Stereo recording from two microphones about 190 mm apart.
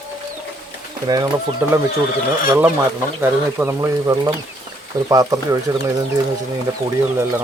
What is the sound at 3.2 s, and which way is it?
Speech, 15° right (ahead or behind).